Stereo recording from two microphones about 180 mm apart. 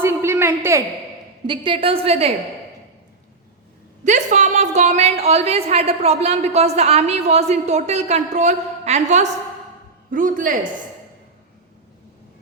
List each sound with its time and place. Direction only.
0.0 s a sound: 15° right (ahead or behind)
1.5 s a woman's voice: 30° right (ahead or behind)
4.0 s a woman's voice: 40° right (ahead or behind)